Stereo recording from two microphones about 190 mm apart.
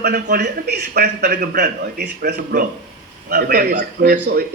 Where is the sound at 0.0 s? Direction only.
55° right (ahead or behind).